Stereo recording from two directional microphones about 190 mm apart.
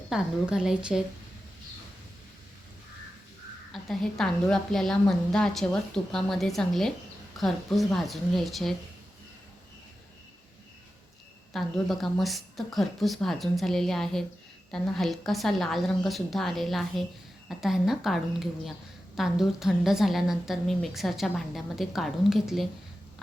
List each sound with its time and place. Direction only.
0.1 s a woman's voice: 5° right (ahead or behind)
3.7 s a woman's voice: centre (ahead or behind)
11.5 s a woman's voice: centre (ahead or behind)